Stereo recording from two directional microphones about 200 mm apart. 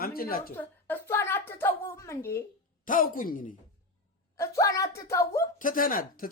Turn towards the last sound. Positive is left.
turn(degrees=45)  # may be behind; listen again after turning